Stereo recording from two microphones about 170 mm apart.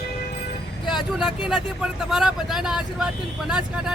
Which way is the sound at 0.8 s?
25° left (ahead or behind).